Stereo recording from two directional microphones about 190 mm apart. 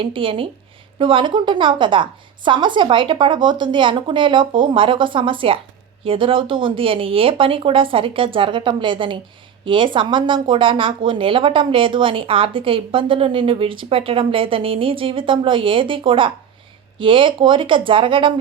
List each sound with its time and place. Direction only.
0.0 s speech: 25° right (ahead or behind)